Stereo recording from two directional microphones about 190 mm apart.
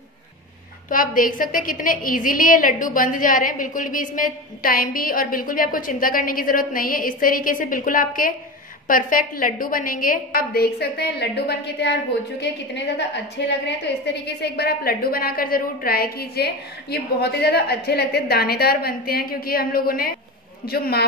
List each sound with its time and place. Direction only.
0.8 s a woman's voice: 45° left (ahead or behind)